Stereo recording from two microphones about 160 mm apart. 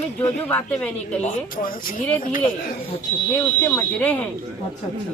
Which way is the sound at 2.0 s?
10° left (ahead or behind).